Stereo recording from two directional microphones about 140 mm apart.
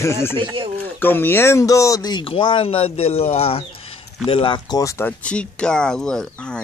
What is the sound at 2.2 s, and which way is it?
Speech, 40° left (ahead or behind).